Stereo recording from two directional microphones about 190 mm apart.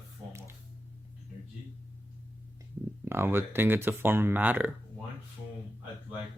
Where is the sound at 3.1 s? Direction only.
10° right (ahead or behind).